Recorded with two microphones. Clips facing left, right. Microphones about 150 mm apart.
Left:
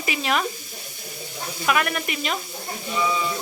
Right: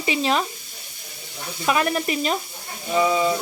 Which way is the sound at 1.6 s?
30° right (ahead or behind).